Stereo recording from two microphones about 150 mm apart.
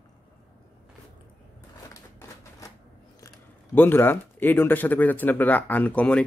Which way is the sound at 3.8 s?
15° left (ahead or behind).